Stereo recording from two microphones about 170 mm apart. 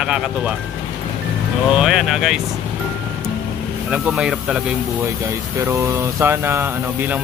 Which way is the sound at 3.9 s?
5° right (ahead or behind).